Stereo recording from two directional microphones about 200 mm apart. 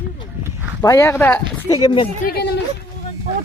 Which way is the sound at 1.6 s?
25° left (ahead or behind).